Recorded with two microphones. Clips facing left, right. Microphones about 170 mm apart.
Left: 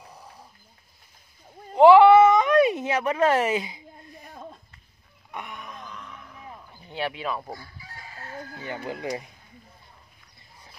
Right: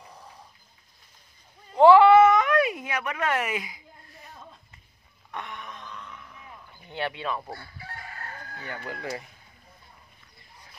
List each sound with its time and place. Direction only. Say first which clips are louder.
1.8 s a sound: left 2 dB; 15° left (ahead or behind)
5.3 s wail: even; 10° left (ahead or behind)
6.7 s speech: left 1 dB; 10° left (ahead or behind)
7.5 s chicken: right 1 dB; 65° right (ahead or behind)
8.6 s speech: left 3 dB; 20° left (ahead or behind)